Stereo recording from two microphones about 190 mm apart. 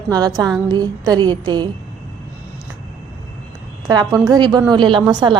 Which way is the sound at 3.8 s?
20° right (ahead or behind).